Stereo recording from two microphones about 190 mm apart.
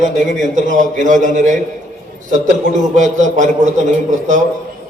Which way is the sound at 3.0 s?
40° right (ahead or behind).